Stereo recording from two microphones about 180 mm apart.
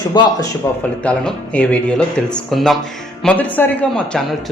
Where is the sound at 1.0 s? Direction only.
5° left (ahead or behind).